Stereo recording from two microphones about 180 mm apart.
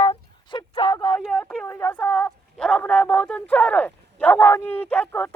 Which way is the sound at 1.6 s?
15° left (ahead or behind).